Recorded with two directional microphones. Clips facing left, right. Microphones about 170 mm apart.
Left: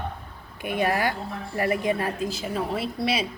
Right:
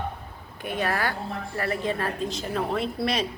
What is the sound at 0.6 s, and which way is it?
A woman's voice, 10° left (ahead or behind).